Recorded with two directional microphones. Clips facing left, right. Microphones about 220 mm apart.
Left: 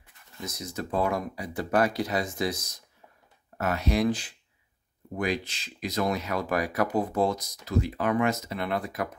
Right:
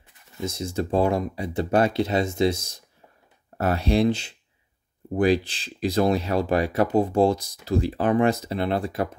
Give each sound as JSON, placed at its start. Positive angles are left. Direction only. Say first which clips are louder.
{"t": 0.4, "sound": "speech", "louder": "right 8 dB", "side_deg": -25}